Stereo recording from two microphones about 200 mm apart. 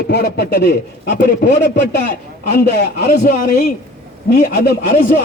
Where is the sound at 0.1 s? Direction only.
55° left (ahead or behind).